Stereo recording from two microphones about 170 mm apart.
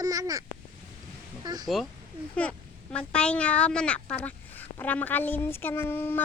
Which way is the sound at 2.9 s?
5° left (ahead or behind).